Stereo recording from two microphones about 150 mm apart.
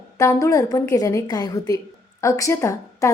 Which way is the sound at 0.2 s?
20° left (ahead or behind).